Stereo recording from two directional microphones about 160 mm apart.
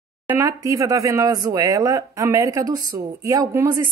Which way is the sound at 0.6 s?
20° right (ahead or behind).